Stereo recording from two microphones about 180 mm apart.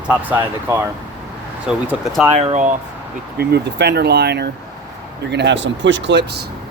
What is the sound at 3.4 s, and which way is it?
Speech, 65° right (ahead or behind).